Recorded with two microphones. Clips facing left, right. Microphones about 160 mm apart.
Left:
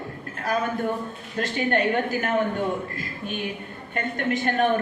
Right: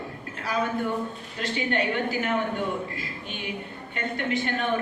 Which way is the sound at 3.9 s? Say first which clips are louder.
Left 2 dB; 45° left (ahead or behind).